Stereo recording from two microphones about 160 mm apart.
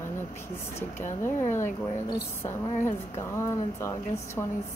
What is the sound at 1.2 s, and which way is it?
Speech, 15° left (ahead or behind).